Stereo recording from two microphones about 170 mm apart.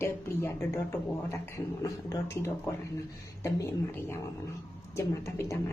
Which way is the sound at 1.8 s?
20° left (ahead or behind).